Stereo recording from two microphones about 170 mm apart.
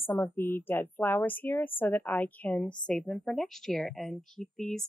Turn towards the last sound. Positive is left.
turn(degrees=5)  # may be behind; listen again after turning